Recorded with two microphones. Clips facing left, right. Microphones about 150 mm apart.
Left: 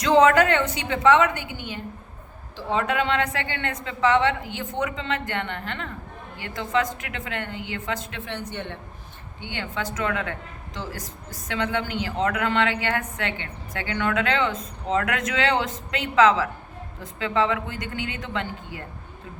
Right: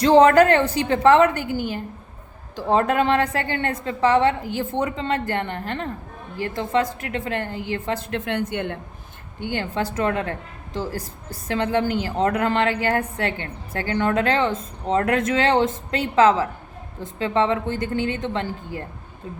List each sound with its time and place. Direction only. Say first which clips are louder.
0.0 s a woman's voice: right 4 dB; 35° right (ahead or behind)
4.6 s a woman's voice: right 4 dB; 30° right (ahead or behind)
8.2 s a woman's voice: right 7 dB; 55° right (ahead or behind)
9.4 s a woman's voice: right 6 dB; 45° right (ahead or behind)